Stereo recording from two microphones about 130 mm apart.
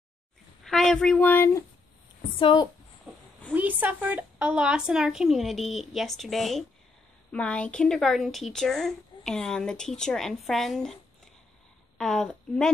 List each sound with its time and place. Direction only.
0.7 s speech: 5° left (ahead or behind)
2.3 s a woman's voice: 35° left (ahead or behind)
3.1 s a sound: 15° right (ahead or behind)
3.5 s speech: 15° right (ahead or behind)
12.0 s speech: 5° left (ahead or behind)